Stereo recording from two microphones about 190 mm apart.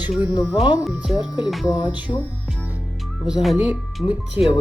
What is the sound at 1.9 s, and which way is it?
Water tap, 10° right (ahead or behind).